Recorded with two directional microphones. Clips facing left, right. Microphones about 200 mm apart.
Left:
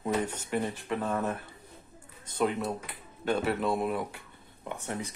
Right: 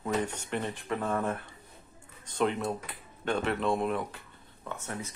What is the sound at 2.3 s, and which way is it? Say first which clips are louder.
Speech: even; 5° left (ahead or behind).